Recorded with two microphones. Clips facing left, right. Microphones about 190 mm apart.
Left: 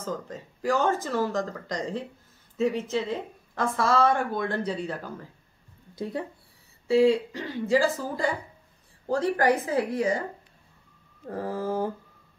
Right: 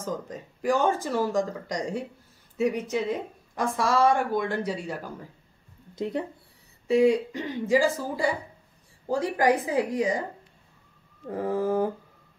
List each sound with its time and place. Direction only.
0.0 s a woman's voice: 15° right (ahead or behind)
5.9 s a woman's voice: 20° right (ahead or behind)
11.2 s a woman's voice: 15° right (ahead or behind)